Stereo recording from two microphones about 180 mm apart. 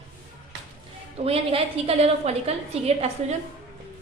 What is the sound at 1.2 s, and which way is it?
A woman's voice, 35° right (ahead or behind).